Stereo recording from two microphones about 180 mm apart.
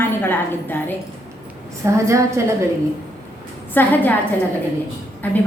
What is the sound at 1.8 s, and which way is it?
Speech, 15° right (ahead or behind).